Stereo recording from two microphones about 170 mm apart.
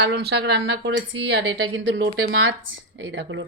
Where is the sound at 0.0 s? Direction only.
70° right (ahead or behind); by 1.5 s 90° right.